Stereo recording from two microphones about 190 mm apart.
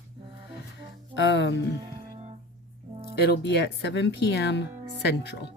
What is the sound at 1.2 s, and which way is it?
Speech, 65° left (ahead or behind).